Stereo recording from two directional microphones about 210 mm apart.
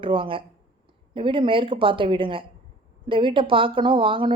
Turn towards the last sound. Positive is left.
turn(degrees=-25)  # may be behind; listen again after turning